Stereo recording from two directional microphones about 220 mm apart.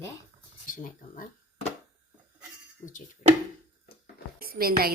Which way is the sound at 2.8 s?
35° left (ahead or behind).